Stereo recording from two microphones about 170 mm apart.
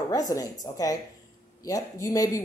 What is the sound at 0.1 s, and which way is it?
A man's voice, 20° left (ahead or behind).